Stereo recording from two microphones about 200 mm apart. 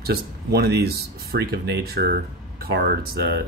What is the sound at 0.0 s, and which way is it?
Speech, 50° right (ahead or behind).